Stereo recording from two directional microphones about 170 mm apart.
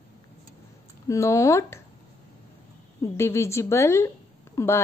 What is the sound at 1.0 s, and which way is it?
Speech, 15° left (ahead or behind).